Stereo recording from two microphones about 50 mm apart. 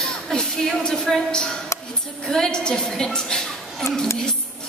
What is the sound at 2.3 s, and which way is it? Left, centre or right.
A woman's voice, centre.